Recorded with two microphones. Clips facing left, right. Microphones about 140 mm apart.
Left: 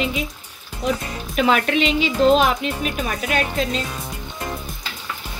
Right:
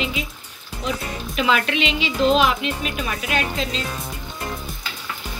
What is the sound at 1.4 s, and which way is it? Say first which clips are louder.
Speech: left 3 dB; 45° left (ahead or behind).